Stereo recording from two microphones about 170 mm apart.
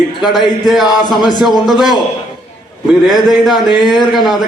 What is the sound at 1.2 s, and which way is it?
Speech, 25° left (ahead or behind).